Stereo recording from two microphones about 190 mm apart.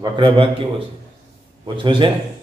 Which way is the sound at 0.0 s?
25° right (ahead or behind).